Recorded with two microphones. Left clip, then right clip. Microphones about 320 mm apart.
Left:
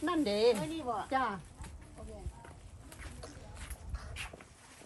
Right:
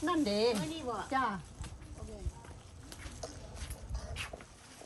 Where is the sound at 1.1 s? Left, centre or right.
Centre.